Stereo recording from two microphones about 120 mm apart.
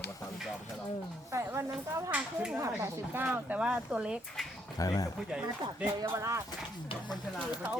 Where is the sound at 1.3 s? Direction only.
25° right (ahead or behind).